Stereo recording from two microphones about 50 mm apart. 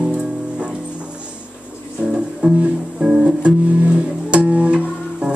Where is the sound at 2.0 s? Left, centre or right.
Centre.